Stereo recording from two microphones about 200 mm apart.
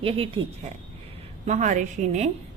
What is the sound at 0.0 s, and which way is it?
Speech, 30° right (ahead or behind).